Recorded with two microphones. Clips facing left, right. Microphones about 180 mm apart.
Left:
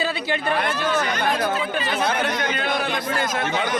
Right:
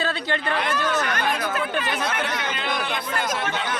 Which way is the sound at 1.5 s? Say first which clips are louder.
Left 1 dB; 60° right (ahead or behind).